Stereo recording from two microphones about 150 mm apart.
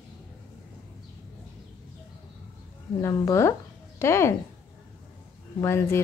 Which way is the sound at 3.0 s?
20° left (ahead or behind).